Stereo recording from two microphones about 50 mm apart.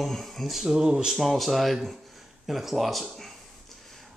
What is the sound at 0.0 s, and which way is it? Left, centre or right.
Speech, centre.